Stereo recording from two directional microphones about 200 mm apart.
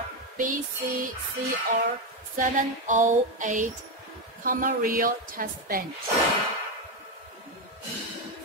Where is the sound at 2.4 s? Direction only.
40° right (ahead or behind).